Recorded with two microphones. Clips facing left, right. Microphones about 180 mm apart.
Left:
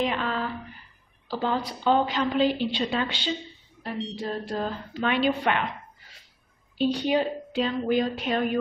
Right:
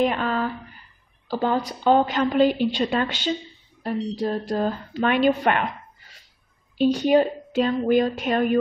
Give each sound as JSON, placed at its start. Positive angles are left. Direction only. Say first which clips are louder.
{"t": 0.0, "sound": "a sound", "louder": "right 5 dB", "side_deg": -45}
{"t": 1.3, "sound": "a woman's voice", "louder": "right 4 dB", "side_deg": -45}
{"t": 6.8, "sound": "a woman's voice", "louder": "right 6 dB", "side_deg": -45}